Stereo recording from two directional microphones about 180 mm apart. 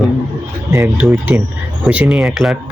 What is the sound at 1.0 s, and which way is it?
Speech, 10° right (ahead or behind).